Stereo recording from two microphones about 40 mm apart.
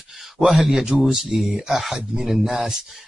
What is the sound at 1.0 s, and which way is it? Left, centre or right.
Speech, centre.